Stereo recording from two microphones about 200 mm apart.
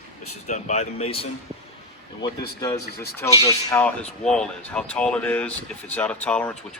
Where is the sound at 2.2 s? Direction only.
20° left (ahead or behind).